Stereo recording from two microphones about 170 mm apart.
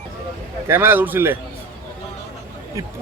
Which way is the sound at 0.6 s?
15° right (ahead or behind).